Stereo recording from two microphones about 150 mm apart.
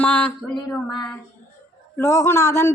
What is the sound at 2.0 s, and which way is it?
Speech, 20° left (ahead or behind).